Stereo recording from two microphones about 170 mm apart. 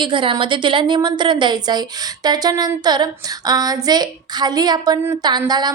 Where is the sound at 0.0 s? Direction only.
30° right (ahead or behind).